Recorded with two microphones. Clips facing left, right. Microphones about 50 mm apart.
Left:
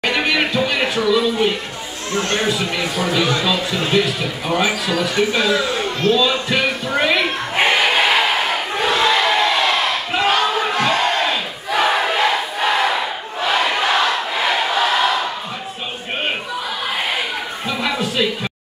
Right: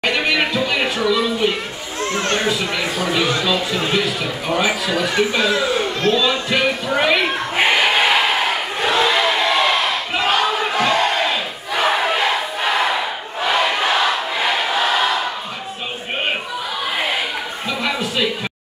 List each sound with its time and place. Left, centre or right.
0.1 s music: centre
2.1 s chatter: right
3.1 s a man's voice: centre
6.2 s a sound: centre
8.7 s crowd: centre
13.4 s choir: centre
17.6 s a sound: centre